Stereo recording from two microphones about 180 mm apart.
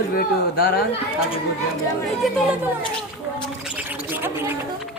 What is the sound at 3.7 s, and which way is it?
Gargling, 10° right (ahead or behind).